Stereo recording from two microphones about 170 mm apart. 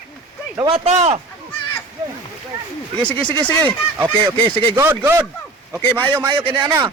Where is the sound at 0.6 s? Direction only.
35° right (ahead or behind).